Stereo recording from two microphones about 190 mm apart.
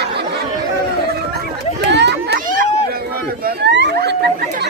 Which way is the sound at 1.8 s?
65° right (ahead or behind).